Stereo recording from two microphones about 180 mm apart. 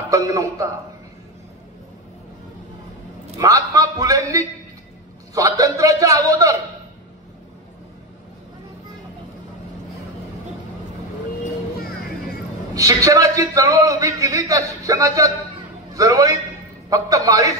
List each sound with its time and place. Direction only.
0.1 s a man's voice: 20° right (ahead or behind)
3.3 s a man's voice: 20° right (ahead or behind)
12.7 s a man's voice: 20° right (ahead or behind)